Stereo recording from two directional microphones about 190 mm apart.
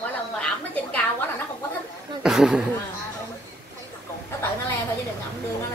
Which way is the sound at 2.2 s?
5° right (ahead or behind).